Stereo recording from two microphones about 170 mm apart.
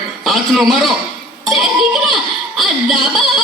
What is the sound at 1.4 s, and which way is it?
Music, centre (ahead or behind).